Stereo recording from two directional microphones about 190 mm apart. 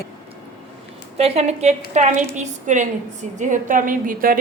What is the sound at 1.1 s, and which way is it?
A woman's voice, 35° right (ahead or behind).